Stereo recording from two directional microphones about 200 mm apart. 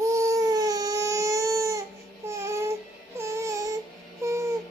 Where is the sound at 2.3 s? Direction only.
15° right (ahead or behind).